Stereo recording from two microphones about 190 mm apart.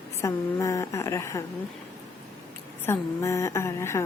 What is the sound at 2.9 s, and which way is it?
Speech, 15° left (ahead or behind).